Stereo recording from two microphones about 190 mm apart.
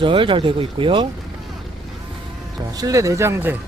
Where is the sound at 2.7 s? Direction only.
20° right (ahead or behind).